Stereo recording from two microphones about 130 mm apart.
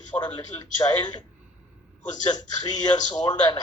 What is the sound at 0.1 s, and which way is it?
Speech, 25° left (ahead or behind).